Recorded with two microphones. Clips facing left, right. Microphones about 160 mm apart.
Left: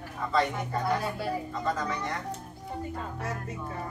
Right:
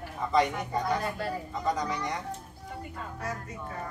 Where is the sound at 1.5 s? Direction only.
15° right (ahead or behind).